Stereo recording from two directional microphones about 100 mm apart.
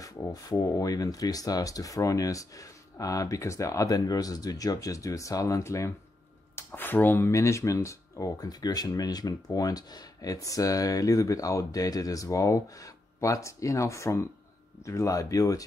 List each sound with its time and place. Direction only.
0.0 s speech: 35° left (ahead or behind)